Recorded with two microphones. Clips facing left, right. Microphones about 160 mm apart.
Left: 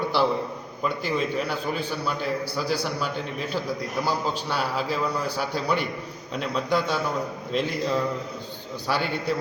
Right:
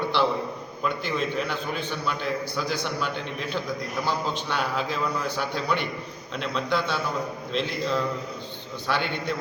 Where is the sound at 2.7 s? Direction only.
35° left (ahead or behind).